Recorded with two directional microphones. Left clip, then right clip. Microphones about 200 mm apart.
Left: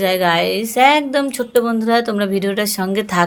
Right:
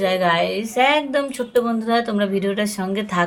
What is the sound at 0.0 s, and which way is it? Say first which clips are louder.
A woman's voice: left 3 dB; 40° left (ahead or behind).